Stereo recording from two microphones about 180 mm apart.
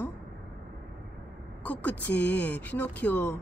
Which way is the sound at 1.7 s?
10° left (ahead or behind).